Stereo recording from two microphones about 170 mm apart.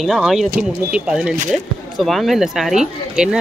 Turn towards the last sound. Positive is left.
turn(degrees=-5)  # may be behind; listen again after turning